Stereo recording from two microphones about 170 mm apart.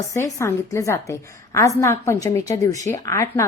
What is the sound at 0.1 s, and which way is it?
A woman's voice, 20° left (ahead or behind).